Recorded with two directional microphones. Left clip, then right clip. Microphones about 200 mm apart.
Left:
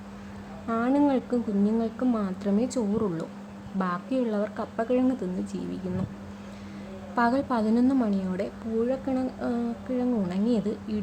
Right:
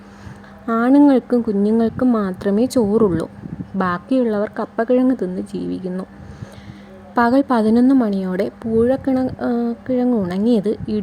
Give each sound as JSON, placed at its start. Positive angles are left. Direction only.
{"t": 0.7, "sound": "a woman's voice", "side_deg": -40}
{"t": 7.2, "sound": "a woman's voice", "side_deg": -40}